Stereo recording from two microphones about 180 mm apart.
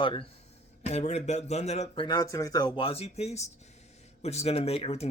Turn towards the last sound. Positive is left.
turn(degrees=35)  # may be behind; listen again after turning